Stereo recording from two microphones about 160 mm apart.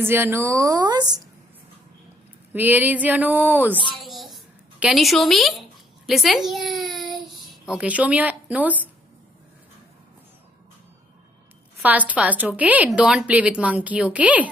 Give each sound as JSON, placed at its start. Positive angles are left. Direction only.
{"t": 0.0, "sound": "a woman's voice", "side_deg": -15}
{"t": 2.5, "sound": "a woman's voice", "side_deg": -10}
{"t": 4.0, "sound": "babbling", "side_deg": 0}
{"t": 7.4, "sound": "speech", "side_deg": -5}
{"t": 12.1, "sound": "a woman's voice", "side_deg": -10}